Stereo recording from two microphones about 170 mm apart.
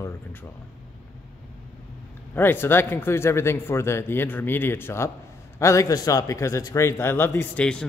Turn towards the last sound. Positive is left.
turn(degrees=5)  # may be behind; listen again after turning